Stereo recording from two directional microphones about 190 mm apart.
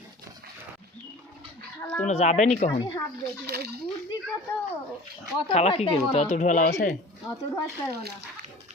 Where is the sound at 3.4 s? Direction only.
55° right (ahead or behind).